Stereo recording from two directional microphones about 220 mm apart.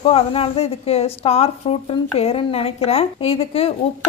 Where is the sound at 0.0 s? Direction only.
25° left (ahead or behind).